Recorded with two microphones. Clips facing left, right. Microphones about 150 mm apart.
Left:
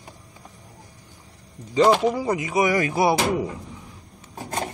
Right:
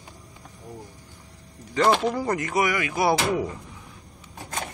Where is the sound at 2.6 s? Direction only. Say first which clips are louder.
Left 4 dB; 30° left (ahead or behind).